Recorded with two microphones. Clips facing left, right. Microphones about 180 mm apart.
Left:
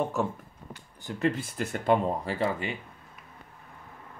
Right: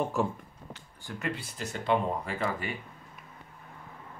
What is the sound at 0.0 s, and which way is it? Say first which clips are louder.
Speech: left 1 dB; centre (ahead or behind).